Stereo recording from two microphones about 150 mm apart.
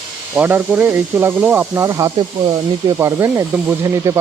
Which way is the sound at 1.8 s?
20° right (ahead or behind).